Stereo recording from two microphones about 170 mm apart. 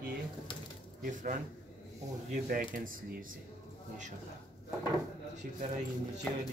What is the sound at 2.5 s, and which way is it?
Speech, 55° right (ahead or behind).